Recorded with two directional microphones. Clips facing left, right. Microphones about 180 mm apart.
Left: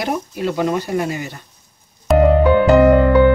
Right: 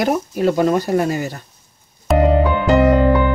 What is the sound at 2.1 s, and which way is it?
Music, centre (ahead or behind).